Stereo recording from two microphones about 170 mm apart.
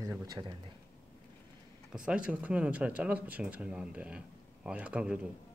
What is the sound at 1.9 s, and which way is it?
Speech, 5° right (ahead or behind).